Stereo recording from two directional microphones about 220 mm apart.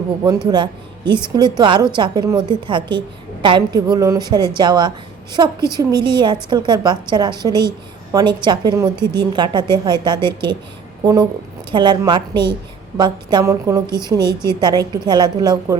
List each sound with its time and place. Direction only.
0.5 s music: 20° right (ahead or behind)
1.2 s a woman's voice: 20° right (ahead or behind)